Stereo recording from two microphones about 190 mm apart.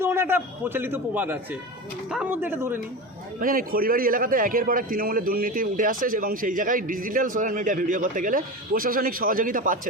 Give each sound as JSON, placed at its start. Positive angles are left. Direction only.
{"t": 0.0, "sound": "a man's voice", "side_deg": -10}
{"t": 3.4, "sound": "a man's voice", "side_deg": -50}